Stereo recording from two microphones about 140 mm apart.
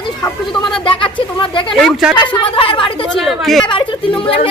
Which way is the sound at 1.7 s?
5° left (ahead or behind).